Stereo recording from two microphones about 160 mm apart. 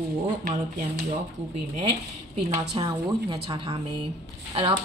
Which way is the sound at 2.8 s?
30° right (ahead or behind).